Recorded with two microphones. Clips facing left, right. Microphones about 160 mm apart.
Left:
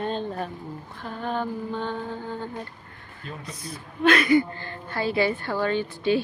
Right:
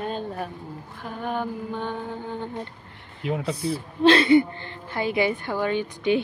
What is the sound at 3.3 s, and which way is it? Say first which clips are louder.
Speech: right 12 dB; 80° right.